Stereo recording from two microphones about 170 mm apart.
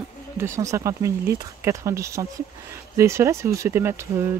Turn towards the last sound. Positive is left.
turn(degrees=-15)  # may be behind; listen again after turning